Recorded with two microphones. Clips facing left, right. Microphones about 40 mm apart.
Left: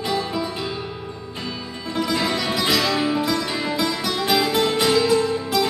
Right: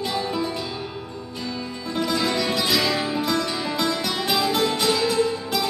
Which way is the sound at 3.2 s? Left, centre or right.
Centre.